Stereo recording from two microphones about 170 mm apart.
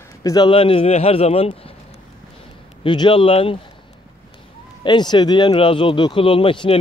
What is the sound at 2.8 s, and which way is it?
Speech, 30° left (ahead or behind).